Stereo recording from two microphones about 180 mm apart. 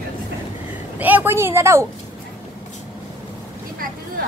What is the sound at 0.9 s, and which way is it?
Speech, 10° right (ahead or behind).